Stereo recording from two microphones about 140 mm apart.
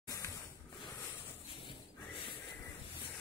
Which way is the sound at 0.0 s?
25° left (ahead or behind).